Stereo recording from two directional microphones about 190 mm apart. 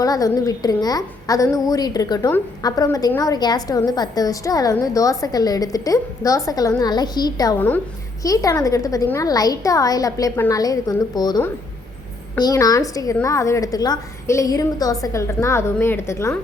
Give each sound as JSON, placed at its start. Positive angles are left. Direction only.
{"t": 0.0, "sound": "a woman's voice", "side_deg": 20}